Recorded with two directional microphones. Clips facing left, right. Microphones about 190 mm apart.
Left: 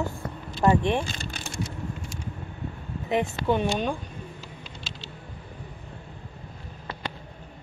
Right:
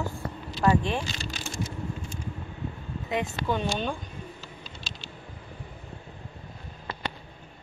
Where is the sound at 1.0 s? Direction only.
55° left (ahead or behind).